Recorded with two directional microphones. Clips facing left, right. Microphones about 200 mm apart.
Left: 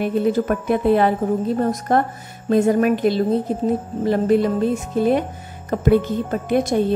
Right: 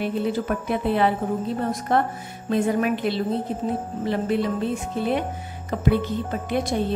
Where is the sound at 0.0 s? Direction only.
45° left (ahead or behind).